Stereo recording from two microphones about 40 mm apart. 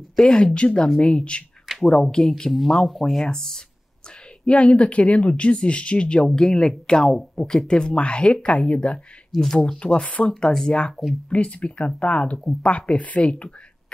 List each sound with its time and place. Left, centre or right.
0.1 s speech: centre
1.8 s speech: centre
2.5 s speech: centre
4.5 s speech: left
6.3 s speech: centre
9.3 s speech: centre
9.6 s speech: left